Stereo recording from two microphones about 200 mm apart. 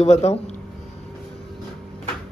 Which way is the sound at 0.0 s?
30° left (ahead or behind).